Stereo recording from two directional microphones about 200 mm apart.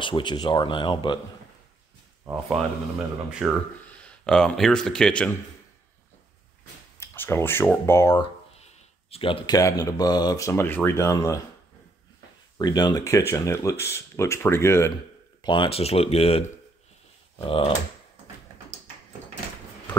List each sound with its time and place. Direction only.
0.0 s speech: 25° left (ahead or behind)
2.3 s speech: centre (ahead or behind)
7.0 s speech: 10° left (ahead or behind)
8.5 s speech: 30° left (ahead or behind); by 11.3 s 15° left (ahead or behind)
12.5 s speech: 20° left (ahead or behind)
15.4 s speech: 25° left (ahead or behind)